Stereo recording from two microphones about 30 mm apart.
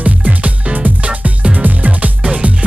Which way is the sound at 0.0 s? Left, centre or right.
Right.